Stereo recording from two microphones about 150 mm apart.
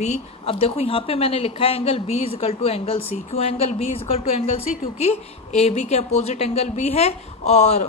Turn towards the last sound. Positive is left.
turn(degrees=45)  # may be behind; listen again after turning